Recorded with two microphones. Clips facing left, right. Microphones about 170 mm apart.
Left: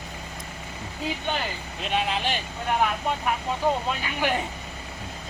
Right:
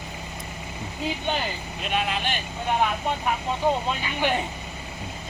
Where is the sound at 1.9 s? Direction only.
25° left (ahead or behind).